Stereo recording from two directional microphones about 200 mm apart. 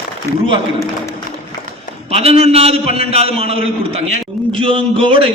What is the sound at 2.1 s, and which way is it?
A man's voice, 30° right (ahead or behind).